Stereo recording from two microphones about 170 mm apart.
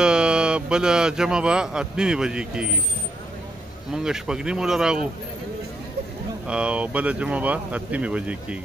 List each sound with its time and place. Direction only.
0.0 s speech: 5° right (ahead or behind)
3.9 s speech: 5° right (ahead or behind)
6.4 s speech: 5° right (ahead or behind)